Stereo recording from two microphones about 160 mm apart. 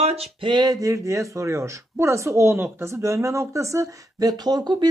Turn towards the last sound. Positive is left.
turn(degrees=-25)  # may be behind; listen again after turning